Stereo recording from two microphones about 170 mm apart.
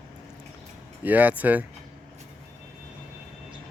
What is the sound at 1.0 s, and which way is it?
Speech, 10° right (ahead or behind).